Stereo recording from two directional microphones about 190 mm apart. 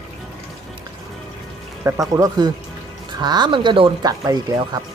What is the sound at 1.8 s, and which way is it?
Speech, 15° right (ahead or behind).